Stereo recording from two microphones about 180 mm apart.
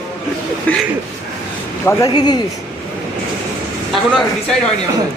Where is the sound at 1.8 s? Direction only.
15° left (ahead or behind).